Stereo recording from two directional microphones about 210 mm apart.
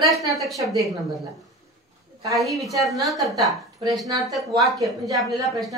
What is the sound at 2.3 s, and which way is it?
A man's voice, centre (ahead or behind).